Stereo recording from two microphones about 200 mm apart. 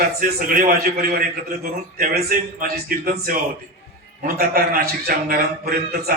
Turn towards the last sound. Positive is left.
turn(degrees=-50)  # may be behind; listen again after turning